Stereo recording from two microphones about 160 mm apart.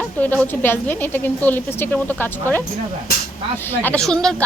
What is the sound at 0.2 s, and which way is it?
A woman's voice, 10° left (ahead or behind).